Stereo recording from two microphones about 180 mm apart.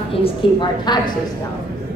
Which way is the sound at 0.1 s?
30° left (ahead or behind).